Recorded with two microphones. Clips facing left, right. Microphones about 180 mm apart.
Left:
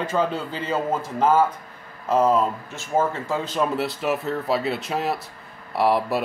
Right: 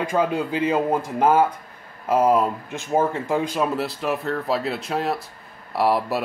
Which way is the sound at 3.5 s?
Centre (ahead or behind).